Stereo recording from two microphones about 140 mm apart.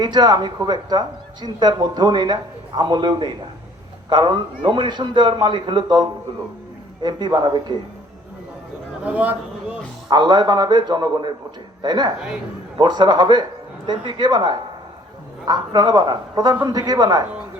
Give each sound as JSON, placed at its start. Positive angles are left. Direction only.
{"t": 0.0, "sound": "a woman's voice", "side_deg": -30}
{"t": 9.0, "sound": "a sound", "side_deg": -10}
{"t": 10.1, "sound": "a woman's voice", "side_deg": -30}